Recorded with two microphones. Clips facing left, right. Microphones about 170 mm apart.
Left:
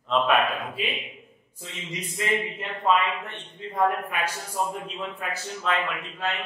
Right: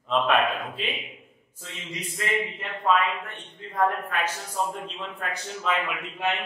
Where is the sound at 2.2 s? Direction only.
20° left (ahead or behind).